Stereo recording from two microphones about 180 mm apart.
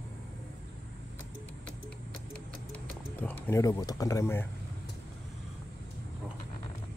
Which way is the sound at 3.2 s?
10° left (ahead or behind).